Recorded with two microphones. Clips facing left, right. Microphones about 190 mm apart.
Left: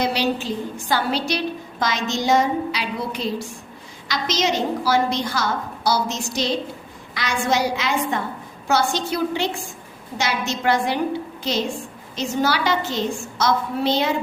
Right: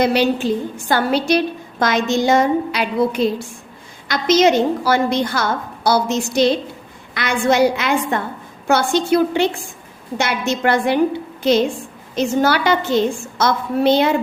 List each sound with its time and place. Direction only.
0.0 s a woman's voice: 55° right (ahead or behind)
12.1 s a woman's voice: 55° right (ahead or behind)